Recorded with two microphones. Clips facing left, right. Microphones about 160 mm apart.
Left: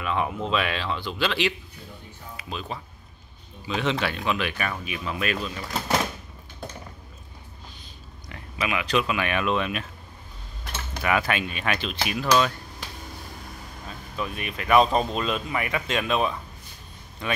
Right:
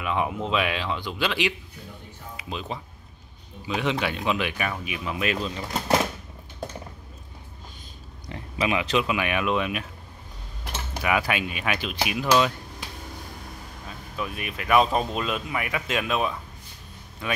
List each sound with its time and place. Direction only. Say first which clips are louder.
0.0 s speech: even; 15° right (ahead or behind)
8.3 s speech: right 3 dB; 25° right (ahead or behind); by 9.8 s 10° right (ahead or behind)
11.0 s speech: even; 10° right (ahead or behind)
14.1 s speech: left 1 dB; 5° right (ahead or behind)